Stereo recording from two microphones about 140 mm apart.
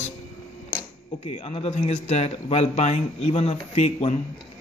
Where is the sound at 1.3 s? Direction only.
45° left (ahead or behind).